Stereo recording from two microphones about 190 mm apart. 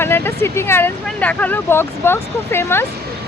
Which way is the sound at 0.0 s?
10° left (ahead or behind).